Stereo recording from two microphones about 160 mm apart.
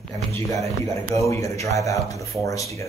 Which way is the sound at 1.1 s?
20° left (ahead or behind).